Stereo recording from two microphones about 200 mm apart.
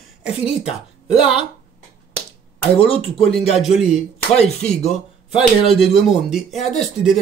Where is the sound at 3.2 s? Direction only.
Centre (ahead or behind).